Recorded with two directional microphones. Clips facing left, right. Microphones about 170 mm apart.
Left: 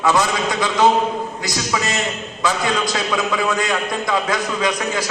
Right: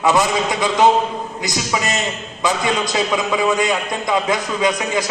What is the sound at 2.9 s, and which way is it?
A man's voice, 20° right (ahead or behind).